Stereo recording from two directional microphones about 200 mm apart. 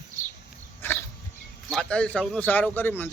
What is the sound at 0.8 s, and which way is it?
Pig, 10° left (ahead or behind).